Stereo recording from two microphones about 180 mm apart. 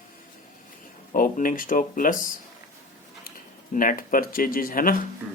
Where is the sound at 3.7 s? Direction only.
50° left (ahead or behind).